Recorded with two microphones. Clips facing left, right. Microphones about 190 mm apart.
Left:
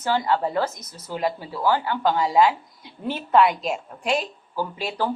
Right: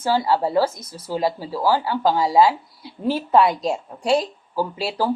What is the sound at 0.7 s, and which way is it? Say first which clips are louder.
Speech: right 5 dB; 30° right (ahead or behind).